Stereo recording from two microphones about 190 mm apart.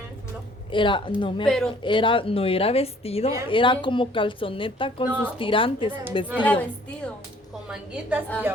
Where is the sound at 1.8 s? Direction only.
25° left (ahead or behind).